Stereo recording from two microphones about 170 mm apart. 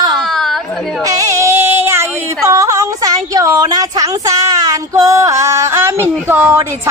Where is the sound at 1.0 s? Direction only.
15° right (ahead or behind).